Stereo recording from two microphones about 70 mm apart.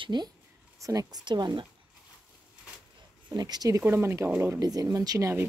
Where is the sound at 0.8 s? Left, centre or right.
Right.